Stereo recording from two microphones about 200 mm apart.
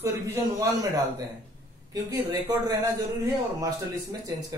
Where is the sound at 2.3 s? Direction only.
15° right (ahead or behind).